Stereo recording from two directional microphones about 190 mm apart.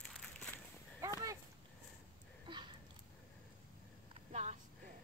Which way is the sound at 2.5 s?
25° right (ahead or behind).